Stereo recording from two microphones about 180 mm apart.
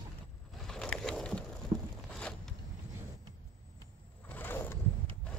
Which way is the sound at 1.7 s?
25° right (ahead or behind).